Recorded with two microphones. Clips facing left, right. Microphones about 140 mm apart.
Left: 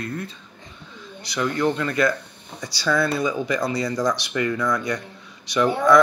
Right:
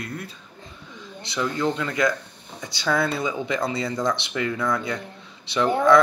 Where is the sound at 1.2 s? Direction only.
25° right (ahead or behind).